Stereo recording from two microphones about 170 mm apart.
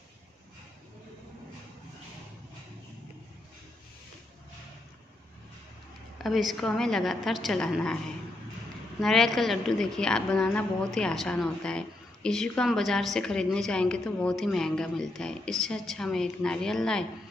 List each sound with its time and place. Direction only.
6.1 s a woman's voice: centre (ahead or behind)
9.0 s a woman's voice: centre (ahead or behind)